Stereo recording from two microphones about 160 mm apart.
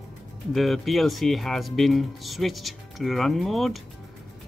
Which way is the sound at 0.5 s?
Centre (ahead or behind).